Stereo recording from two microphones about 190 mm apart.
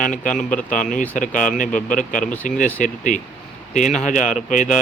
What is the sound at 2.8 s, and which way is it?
Speech, 40° left (ahead or behind).